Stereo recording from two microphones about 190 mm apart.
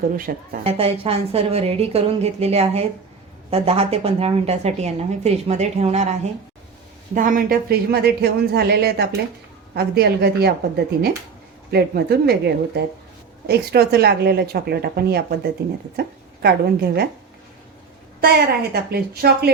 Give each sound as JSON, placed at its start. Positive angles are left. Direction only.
{"t": 0.3, "sound": "a woman's voice", "side_deg": -45}
{"t": 0.6, "sound": "a woman's voice", "side_deg": -30}
{"t": 11.7, "sound": "a woman's voice", "side_deg": -55}
{"t": 18.2, "sound": "a woman's voice", "side_deg": -55}